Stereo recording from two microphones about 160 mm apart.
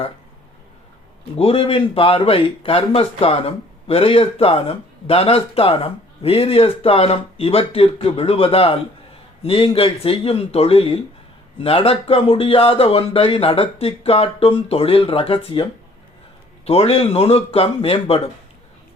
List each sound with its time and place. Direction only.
1.4 s speech: 35° left (ahead or behind)
16.6 s speech: 40° left (ahead or behind)